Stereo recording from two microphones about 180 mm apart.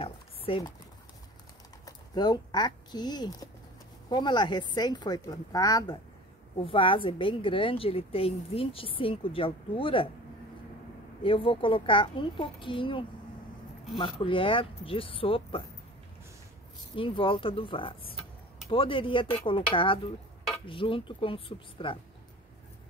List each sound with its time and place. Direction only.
0.0 s a sound: 30° left (ahead or behind)
1.9 s a woman's voice: 20° left (ahead or behind)
11.2 s a woman's voice: 30° left (ahead or behind)
16.9 s a woman's voice: 30° left (ahead or behind)